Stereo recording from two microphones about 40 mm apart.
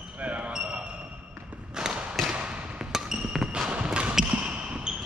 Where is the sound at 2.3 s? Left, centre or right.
Centre.